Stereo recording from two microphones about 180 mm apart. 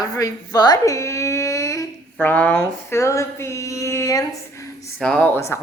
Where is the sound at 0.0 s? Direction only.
20° left (ahead or behind).